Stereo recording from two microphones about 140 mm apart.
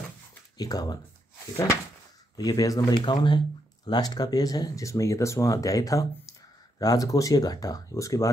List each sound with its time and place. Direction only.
0.6 s speech: 25° left (ahead or behind)
2.3 s speech: 25° left (ahead or behind)